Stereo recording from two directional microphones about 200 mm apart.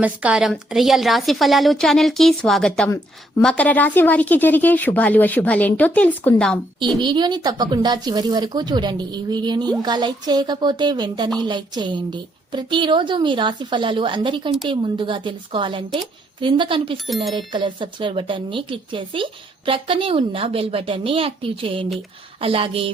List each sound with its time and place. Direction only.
0.0 s a woman's voice: 5° right (ahead or behind)
7.0 s speech: 20° right (ahead or behind)